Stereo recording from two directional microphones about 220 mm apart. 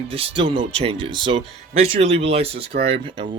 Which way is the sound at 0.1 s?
25° right (ahead or behind).